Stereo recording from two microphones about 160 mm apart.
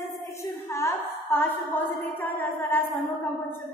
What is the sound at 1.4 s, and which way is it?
A woman's voice, 15° left (ahead or behind).